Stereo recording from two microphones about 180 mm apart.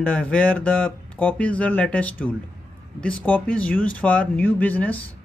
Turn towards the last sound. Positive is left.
turn(degrees=10)  # may be behind; listen again after turning